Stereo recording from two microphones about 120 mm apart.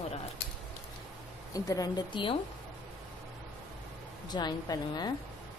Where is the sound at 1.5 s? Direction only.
30° left (ahead or behind).